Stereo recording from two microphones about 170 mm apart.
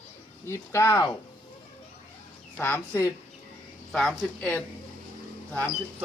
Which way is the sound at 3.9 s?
Centre (ahead or behind).